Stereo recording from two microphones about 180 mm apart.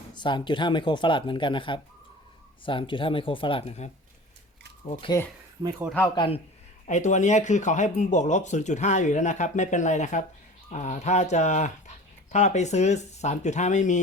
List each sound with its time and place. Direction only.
0.1 s speech: 25° left (ahead or behind)
6.1 s speech: 30° left (ahead or behind)
6.8 s speech: 40° left (ahead or behind)